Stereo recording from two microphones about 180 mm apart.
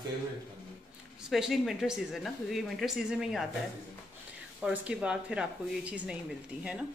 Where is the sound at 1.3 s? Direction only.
Centre (ahead or behind).